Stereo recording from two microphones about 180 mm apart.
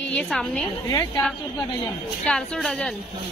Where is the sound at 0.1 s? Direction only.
5° left (ahead or behind).